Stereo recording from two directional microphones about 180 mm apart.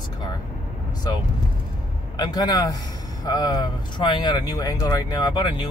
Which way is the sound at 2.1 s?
20° left (ahead or behind).